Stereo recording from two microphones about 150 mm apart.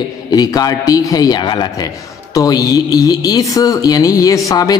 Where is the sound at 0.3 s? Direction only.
25° left (ahead or behind).